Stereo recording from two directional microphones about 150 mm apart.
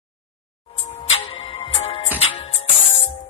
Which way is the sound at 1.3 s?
40° left (ahead or behind).